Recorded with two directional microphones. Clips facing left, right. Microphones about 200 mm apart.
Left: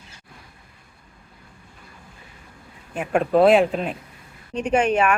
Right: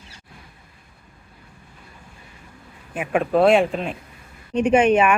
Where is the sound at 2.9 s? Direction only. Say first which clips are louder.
Left 1 dB; 5° right (ahead or behind).